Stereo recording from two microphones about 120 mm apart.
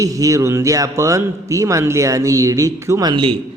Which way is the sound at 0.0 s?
30° right (ahead or behind).